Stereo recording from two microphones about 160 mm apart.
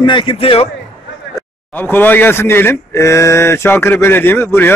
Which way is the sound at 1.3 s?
15° left (ahead or behind).